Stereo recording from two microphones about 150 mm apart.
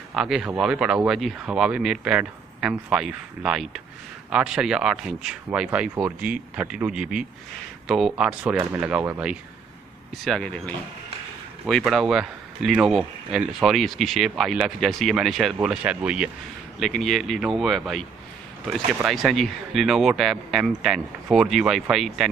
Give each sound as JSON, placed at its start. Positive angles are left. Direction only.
{"t": 0.1, "sound": "speech", "side_deg": -5}
{"t": 10.2, "sound": "speech", "side_deg": 5}
{"t": 19.0, "sound": "speech", "side_deg": 0}